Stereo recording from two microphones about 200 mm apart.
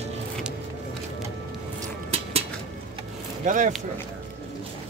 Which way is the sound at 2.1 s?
30° right (ahead or behind).